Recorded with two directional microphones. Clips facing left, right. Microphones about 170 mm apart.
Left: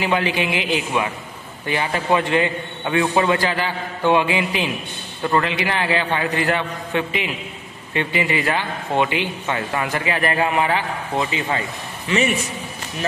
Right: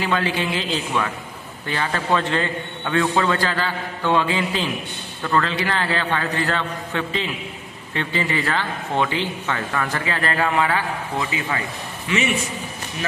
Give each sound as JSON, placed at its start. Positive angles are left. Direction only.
{"t": 0.0, "sound": "a man's voice", "side_deg": 15}